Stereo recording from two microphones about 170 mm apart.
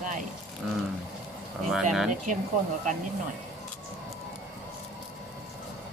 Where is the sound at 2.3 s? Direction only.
50° right (ahead or behind).